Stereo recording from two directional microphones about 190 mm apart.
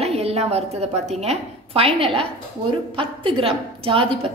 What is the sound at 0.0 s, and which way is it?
A woman's voice, 35° right (ahead or behind).